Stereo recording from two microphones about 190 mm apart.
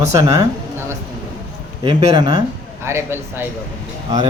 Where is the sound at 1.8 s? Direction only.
30° right (ahead or behind).